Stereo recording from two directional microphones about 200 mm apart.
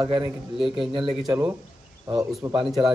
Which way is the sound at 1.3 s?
10° right (ahead or behind).